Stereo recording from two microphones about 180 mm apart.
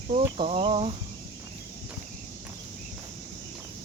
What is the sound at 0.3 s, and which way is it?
Cricket, 30° right (ahead or behind).